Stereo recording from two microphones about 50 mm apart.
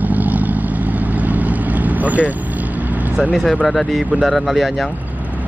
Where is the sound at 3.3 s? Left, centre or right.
Centre.